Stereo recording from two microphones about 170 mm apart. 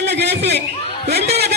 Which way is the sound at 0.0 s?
80° right.